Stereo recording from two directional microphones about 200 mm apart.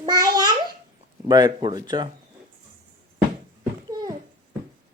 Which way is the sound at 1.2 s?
20° right (ahead or behind).